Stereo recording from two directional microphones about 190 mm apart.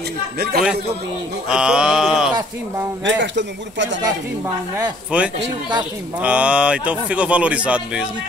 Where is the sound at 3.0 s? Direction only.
70° right (ahead or behind).